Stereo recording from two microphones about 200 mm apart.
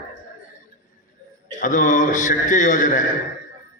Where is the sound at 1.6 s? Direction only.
40° left (ahead or behind).